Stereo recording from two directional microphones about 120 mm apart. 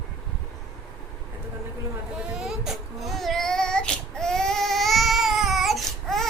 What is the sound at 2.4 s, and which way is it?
Child singing, 5° right (ahead or behind).